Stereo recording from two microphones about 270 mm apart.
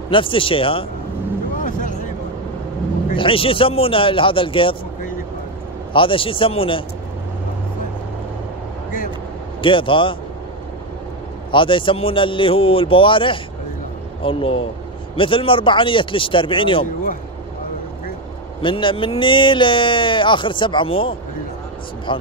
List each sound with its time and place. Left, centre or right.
0.1 s speech: centre
1.6 s a sound: left
3.2 s speech: centre
5.9 s speech: centre
9.6 s speech: centre
11.5 s speech: centre
18.6 s speech: centre